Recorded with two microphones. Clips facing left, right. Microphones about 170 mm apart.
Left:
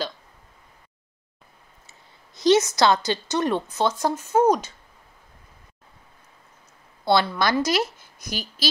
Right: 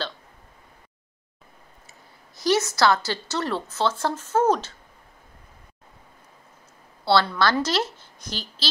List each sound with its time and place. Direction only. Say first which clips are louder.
2.3 s a woman's voice: left 4 dB; 20° left (ahead or behind)
7.1 s a woman's voice: even; 15° left (ahead or behind)